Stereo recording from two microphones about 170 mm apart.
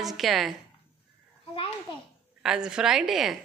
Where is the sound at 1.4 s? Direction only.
30° left (ahead or behind).